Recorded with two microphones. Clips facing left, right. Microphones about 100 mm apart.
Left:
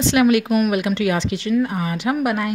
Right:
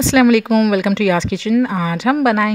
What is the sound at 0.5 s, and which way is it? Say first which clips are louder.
A woman's voice: right 4 dB; 90° right.